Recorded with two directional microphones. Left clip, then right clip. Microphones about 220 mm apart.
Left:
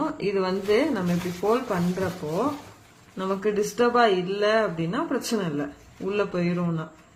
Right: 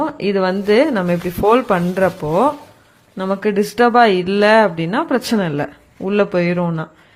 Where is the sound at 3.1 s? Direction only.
45° right (ahead or behind).